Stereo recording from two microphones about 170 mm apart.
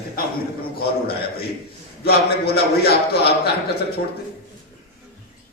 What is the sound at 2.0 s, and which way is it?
A man's voice, 70° left (ahead or behind).